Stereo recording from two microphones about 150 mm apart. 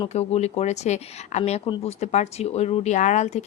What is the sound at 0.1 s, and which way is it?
Speech, 45° left (ahead or behind).